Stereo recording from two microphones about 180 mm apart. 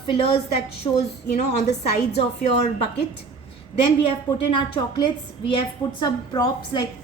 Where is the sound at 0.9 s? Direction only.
25° left (ahead or behind).